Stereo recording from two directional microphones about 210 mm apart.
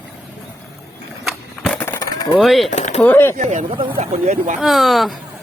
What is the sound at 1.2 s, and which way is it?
Skateboard, centre (ahead or behind).